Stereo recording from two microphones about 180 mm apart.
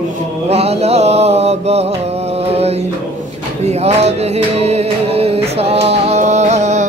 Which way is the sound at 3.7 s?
35° right (ahead or behind).